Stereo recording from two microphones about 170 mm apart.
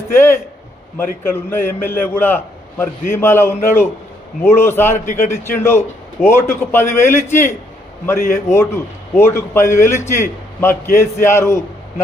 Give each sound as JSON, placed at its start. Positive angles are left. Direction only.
{"t": 0.1, "sound": "a man's voice", "side_deg": 15}